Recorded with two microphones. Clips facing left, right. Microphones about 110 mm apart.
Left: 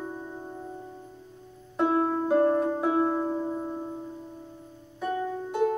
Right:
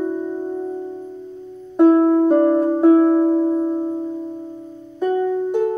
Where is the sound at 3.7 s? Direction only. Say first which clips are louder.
Right 13 dB; 25° right (ahead or behind).